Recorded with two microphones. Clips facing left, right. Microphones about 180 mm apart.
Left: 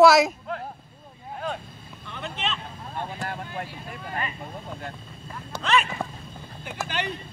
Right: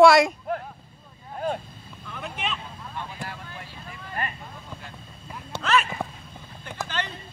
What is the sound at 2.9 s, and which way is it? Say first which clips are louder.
Vehicle: left 5 dB; 50° left (ahead or behind).